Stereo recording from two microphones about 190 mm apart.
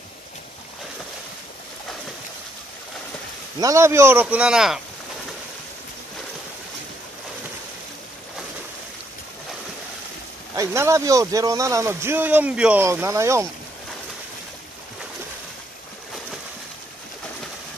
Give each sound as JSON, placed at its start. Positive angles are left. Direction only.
{"t": 3.6, "sound": "a man's voice", "side_deg": -15}
{"t": 10.5, "sound": "a man's voice", "side_deg": -15}